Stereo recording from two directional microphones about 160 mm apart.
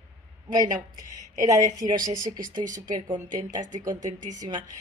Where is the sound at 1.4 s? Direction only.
20° right (ahead or behind).